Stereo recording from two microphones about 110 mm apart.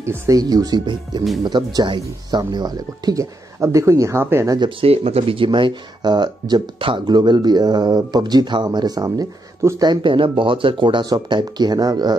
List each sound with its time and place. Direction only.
0.0 s speech: 30° right (ahead or behind)
4.6 s speech: 50° right (ahead or behind); by 9.8 s 30° right (ahead or behind)
9.8 s speech: 50° right (ahead or behind)